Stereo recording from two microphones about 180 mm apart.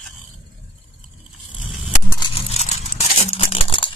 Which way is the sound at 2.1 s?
35° left (ahead or behind).